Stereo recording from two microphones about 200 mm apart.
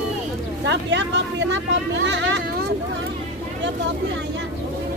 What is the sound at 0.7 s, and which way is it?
Speech, 60° right (ahead or behind).